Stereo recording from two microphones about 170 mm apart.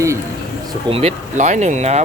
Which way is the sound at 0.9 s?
35° right (ahead or behind).